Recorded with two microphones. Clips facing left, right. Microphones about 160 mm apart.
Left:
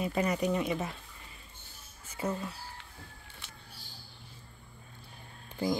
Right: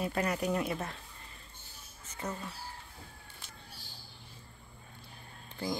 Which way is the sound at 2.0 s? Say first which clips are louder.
Left 5 dB; 10° left (ahead or behind).